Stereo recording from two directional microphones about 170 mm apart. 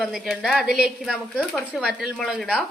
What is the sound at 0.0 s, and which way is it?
A woman's voice, centre (ahead or behind).